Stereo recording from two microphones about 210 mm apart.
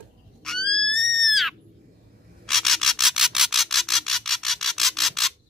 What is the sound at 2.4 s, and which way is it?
Rub, centre (ahead or behind).